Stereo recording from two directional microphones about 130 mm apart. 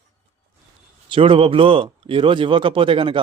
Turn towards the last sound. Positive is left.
turn(degrees=-45)  # may be behind; listen again after turning